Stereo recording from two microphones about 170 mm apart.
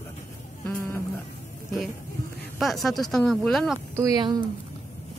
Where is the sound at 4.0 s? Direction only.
25° right (ahead or behind).